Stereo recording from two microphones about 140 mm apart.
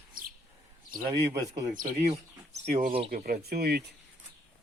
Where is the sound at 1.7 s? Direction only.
70° right (ahead or behind).